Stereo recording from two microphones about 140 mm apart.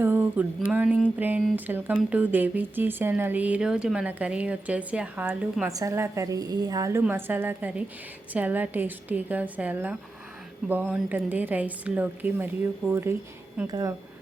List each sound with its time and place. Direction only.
0.0 s a sound: 15° right (ahead or behind)
1.2 s speech: 10° right (ahead or behind)
5.6 s a woman's voice: 20° right (ahead or behind)